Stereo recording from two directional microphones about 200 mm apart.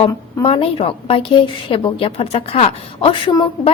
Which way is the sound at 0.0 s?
30° left (ahead or behind).